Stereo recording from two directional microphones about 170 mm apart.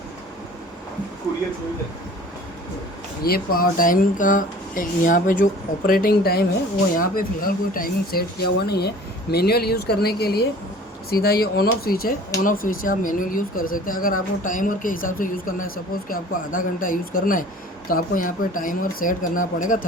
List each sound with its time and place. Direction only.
3.2 s speech: 60° left (ahead or behind)